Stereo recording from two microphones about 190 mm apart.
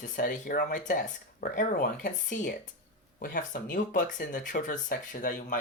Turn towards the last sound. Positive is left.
turn(degrees=45)  # may be behind; listen again after turning